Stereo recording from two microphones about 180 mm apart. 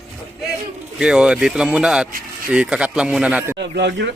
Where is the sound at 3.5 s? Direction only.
70° right (ahead or behind).